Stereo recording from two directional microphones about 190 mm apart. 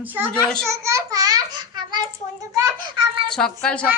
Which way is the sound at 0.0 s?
10° right (ahead or behind).